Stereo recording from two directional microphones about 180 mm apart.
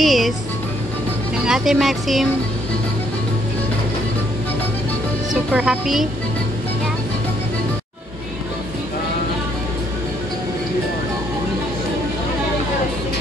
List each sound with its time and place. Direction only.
0.0 s speech: centre (ahead or behind)
1.4 s speech: centre (ahead or behind)
5.3 s speech: 5° right (ahead or behind)